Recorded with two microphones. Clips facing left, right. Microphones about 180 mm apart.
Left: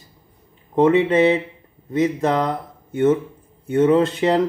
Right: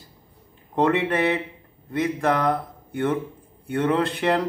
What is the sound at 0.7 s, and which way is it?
Speech, 20° left (ahead or behind).